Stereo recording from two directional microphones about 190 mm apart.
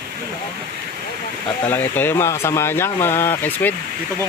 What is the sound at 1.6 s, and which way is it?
Speech, 10° left (ahead or behind).